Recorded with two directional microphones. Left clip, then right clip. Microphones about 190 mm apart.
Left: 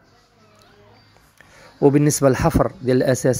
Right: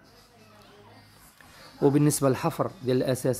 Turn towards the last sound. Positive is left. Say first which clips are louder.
# left 8 dB
turn(degrees=25)  # may be behind; listen again after turning